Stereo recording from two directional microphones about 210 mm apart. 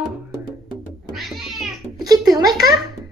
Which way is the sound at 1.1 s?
Centre (ahead or behind).